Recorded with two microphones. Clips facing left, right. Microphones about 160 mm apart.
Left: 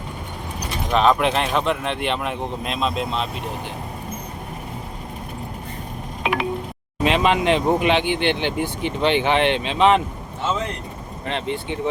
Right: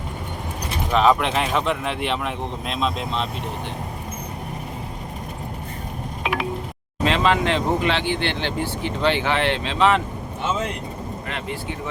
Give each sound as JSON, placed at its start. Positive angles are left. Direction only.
{"t": 0.9, "sound": "speech", "side_deg": 0}
{"t": 6.3, "sound": "telephone dialing", "side_deg": 0}
{"t": 7.0, "sound": "speech", "side_deg": 15}
{"t": 11.3, "sound": "speech", "side_deg": 25}